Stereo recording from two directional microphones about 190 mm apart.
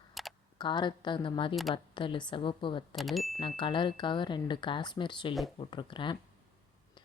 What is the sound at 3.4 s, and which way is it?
Speech, 25° left (ahead or behind).